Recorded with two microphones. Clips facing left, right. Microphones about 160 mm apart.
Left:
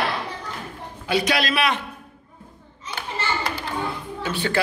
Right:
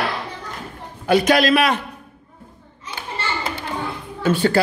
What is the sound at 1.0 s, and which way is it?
Speech, 45° right (ahead or behind).